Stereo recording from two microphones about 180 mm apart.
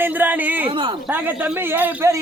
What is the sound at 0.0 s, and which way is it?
A man's voice, 10° right (ahead or behind).